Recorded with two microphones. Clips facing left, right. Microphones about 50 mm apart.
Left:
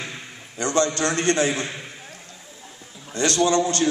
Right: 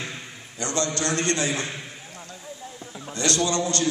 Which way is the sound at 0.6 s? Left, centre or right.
Left.